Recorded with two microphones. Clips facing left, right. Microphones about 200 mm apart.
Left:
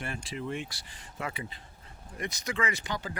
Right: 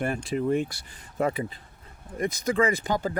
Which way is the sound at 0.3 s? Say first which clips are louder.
Right 11 dB; 45° right (ahead or behind).